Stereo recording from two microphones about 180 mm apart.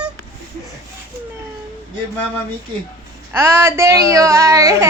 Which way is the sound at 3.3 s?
15° right (ahead or behind).